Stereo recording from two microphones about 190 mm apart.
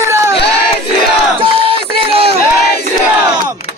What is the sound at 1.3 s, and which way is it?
Crowd, 30° right (ahead or behind).